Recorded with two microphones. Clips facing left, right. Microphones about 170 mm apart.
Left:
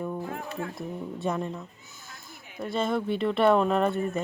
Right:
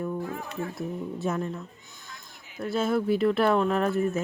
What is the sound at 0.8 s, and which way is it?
Speech, centre (ahead or behind).